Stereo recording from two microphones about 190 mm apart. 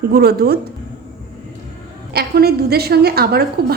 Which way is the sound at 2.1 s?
55° right (ahead or behind).